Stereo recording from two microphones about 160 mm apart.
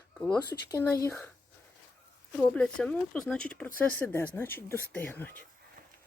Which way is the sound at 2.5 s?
5° left (ahead or behind).